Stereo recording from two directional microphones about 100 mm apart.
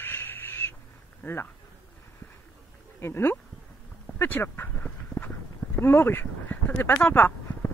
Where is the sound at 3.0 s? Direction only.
25° left (ahead or behind).